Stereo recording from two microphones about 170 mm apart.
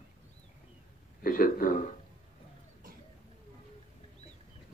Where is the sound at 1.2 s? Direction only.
55° left (ahead or behind).